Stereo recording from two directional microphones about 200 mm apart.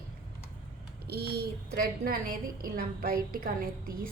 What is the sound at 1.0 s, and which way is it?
A woman's voice, 50° right (ahead or behind).